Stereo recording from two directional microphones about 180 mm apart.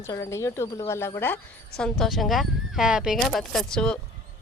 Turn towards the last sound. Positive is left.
turn(degrees=5)  # may be behind; listen again after turning